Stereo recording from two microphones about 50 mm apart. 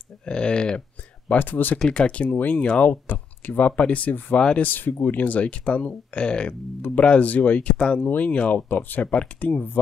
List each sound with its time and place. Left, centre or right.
0.2 s speech: centre
1.3 s speech: left
1.8 s speech: centre
2.2 s speech: left
8.0 s speech: left
8.3 s speech: left
9.1 s speech: left